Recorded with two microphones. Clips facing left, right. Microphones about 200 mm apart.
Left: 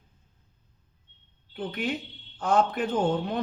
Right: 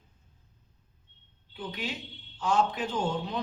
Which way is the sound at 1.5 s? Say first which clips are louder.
Left 6 dB; 55° left (ahead or behind).